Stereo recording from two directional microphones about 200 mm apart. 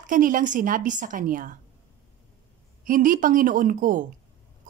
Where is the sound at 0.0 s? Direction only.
40° right (ahead or behind).